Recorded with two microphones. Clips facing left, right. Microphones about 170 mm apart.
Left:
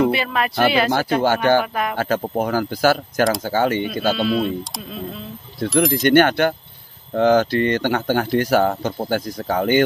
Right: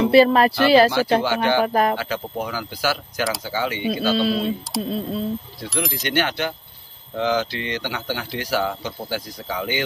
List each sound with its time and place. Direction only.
0.1 s speech: 35° right (ahead or behind)
0.9 s speech: 50° left (ahead or behind)
1.6 s speech: 35° right (ahead or behind)
2.0 s speech: 50° left (ahead or behind)
4.8 s speech: 30° right (ahead or behind)
5.7 s speech: centre (ahead or behind)
6.0 s speech: 50° left (ahead or behind)